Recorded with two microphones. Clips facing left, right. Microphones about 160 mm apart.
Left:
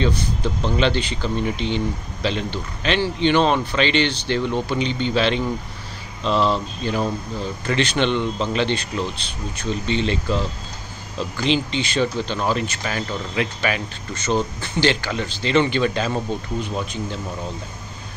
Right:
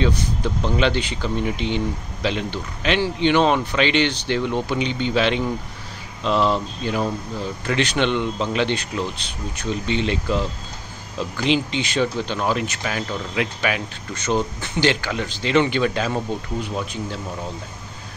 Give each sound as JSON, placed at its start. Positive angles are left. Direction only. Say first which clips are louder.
{"t": 0.0, "sound": "speech", "louder": "even", "side_deg": -10}